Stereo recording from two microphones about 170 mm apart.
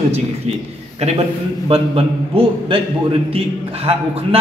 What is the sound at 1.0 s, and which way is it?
A man's voice, 35° right (ahead or behind).